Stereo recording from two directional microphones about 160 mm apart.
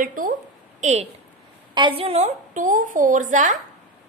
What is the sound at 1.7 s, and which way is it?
A woman's voice, 30° right (ahead or behind).